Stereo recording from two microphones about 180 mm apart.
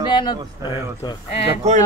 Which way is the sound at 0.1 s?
25° left (ahead or behind).